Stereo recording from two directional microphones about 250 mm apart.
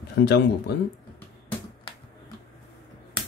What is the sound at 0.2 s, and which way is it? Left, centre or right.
Speech, left.